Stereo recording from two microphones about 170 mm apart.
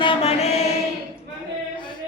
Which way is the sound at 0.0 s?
35° left (ahead or behind).